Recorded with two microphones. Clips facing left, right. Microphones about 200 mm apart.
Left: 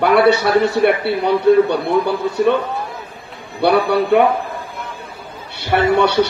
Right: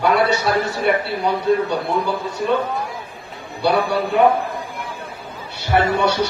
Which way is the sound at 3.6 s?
60° left (ahead or behind).